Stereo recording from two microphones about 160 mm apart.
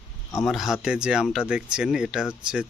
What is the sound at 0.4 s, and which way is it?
Speech, centre (ahead or behind).